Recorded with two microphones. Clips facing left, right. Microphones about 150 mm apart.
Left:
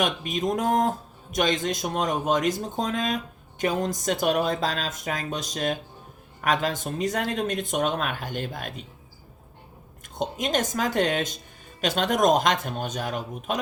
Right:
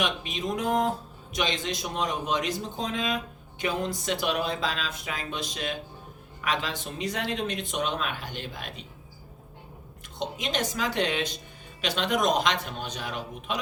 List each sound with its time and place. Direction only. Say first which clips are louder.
0.0 s speech: left 4 dB; 45° left (ahead or behind)
10.2 s speech: left 4 dB; 45° left (ahead or behind)